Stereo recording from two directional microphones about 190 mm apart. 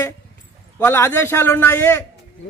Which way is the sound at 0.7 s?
15° left (ahead or behind).